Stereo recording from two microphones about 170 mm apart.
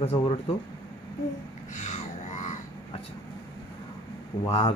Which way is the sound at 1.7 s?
45° left (ahead or behind).